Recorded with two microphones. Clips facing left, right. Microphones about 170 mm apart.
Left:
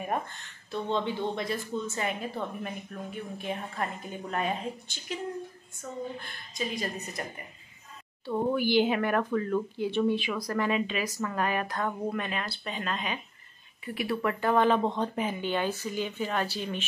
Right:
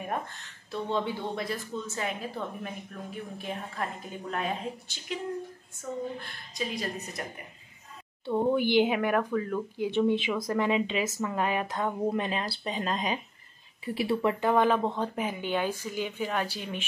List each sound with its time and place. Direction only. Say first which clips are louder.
0.0 s speech: left 2 dB; centre (ahead or behind)
6.2 s speech: even; centre (ahead or behind)
8.3 s speech: right 2 dB; 20° right (ahead or behind); by 9.6 s centre (ahead or behind)
9.8 s speech: right 4 dB; 20° right (ahead or behind)